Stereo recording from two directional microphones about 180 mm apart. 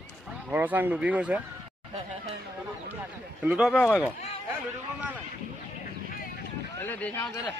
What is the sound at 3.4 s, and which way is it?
Speech, centre (ahead or behind).